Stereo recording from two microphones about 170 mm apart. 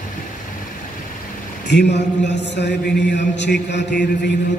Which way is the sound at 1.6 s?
90° left.